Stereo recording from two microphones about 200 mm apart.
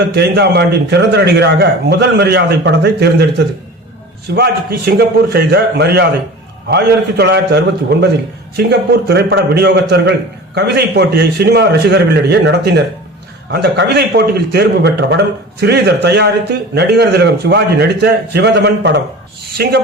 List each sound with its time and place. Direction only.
0.0 s a man's voice: 55° right (ahead or behind)